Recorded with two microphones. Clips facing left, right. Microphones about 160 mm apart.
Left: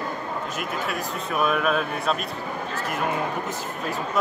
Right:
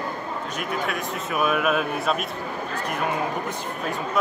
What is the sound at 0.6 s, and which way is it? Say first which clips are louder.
Speech: right 3 dB; centre (ahead or behind).